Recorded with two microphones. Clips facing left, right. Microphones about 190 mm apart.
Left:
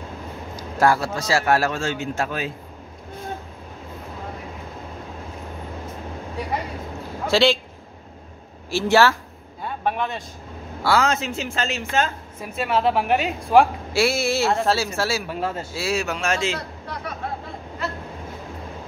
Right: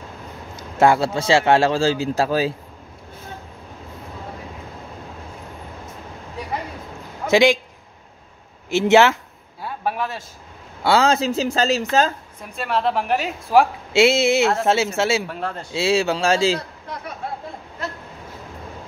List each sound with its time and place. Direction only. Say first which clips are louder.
0.6 s a man's voice: right 3 dB; 25° right (ahead or behind)
7.2 s a man's voice: right 3 dB; 15° right (ahead or behind)
8.6 s a man's voice: right 3 dB; 20° right (ahead or behind)
9.6 s a man's voice: even; 5° right (ahead or behind)
10.8 s a woman's voice: right 3 dB; 25° right (ahead or behind)
12.4 s a woman's voice: left 2 dB; 5° left (ahead or behind)
13.9 s a man's voice: right 5 dB; 25° right (ahead or behind)
15.2 s a woman's voice: left 2 dB; 5° left (ahead or behind)
15.7 s a man's voice: right 11 dB; 25° right (ahead or behind)